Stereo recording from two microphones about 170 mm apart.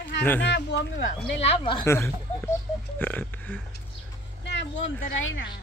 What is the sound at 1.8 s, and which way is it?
Speech, 15° left (ahead or behind).